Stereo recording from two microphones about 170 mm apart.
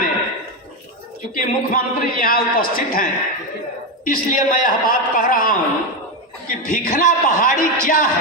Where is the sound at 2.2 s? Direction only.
55° left (ahead or behind).